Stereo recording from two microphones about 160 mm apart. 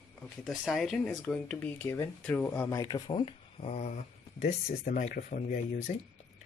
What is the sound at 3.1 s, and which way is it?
Speech, 35° left (ahead or behind).